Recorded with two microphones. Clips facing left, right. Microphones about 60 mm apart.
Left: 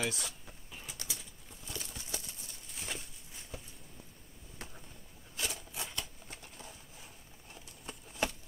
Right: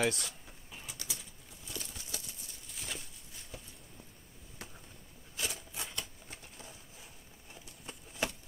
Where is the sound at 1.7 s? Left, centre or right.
Centre.